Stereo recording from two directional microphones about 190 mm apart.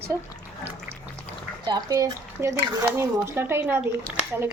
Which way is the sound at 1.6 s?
20° right (ahead or behind).